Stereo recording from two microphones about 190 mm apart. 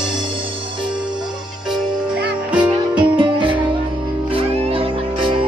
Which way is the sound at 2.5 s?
5° right (ahead or behind).